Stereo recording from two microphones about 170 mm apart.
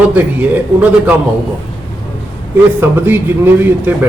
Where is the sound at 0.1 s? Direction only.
10° right (ahead or behind).